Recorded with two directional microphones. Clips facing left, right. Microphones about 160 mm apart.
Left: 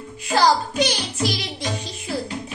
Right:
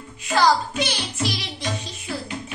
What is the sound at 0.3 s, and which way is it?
Music, 40° left (ahead or behind).